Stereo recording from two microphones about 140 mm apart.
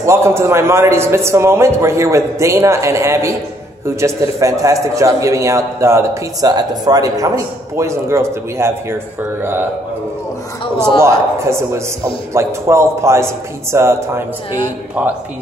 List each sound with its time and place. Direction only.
0.0 s a man's voice: 20° right (ahead or behind)
11.0 s a man's voice: 20° right (ahead or behind)